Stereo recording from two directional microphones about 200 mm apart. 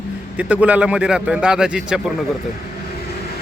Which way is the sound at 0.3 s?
5° right (ahead or behind).